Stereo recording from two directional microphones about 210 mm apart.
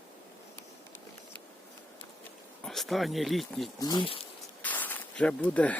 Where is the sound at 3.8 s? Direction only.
20° left (ahead or behind).